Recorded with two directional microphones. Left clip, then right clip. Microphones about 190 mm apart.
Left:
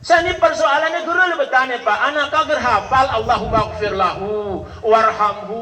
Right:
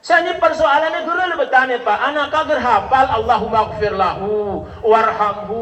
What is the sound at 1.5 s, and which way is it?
A man's voice, 15° left (ahead or behind).